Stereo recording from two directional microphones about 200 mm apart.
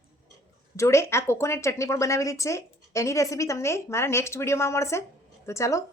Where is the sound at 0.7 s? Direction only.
15° left (ahead or behind).